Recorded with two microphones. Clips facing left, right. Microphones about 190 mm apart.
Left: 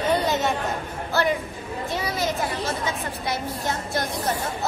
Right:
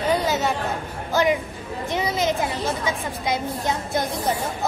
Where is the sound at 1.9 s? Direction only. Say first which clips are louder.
Right 4 dB; 20° right (ahead or behind).